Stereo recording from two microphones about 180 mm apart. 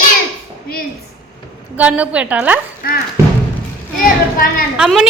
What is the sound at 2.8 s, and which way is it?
Speech, 55° left (ahead or behind).